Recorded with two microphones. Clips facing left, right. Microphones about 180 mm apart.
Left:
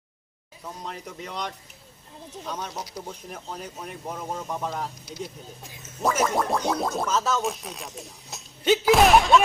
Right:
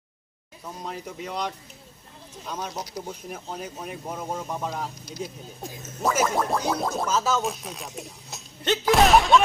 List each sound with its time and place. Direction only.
0.8 s speech: 5° right (ahead or behind)
5.1 s speech: 40° right (ahead or behind)
6.0 s speech: centre (ahead or behind)